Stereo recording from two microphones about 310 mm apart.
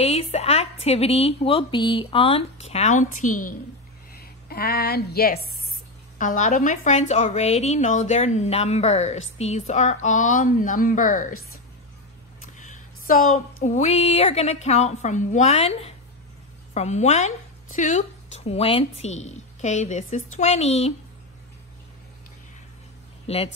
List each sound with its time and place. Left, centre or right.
0.0 s a woman's voice: centre
12.5 s a sound: left
13.7 s a woman's voice: left
23.2 s speech: centre